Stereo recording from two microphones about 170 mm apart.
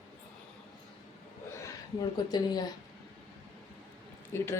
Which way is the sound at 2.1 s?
25° left (ahead or behind).